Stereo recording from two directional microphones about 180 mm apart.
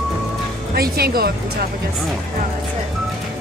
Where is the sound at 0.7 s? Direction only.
60° right (ahead or behind).